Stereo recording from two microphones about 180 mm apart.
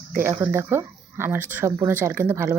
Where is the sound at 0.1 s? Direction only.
10° right (ahead or behind).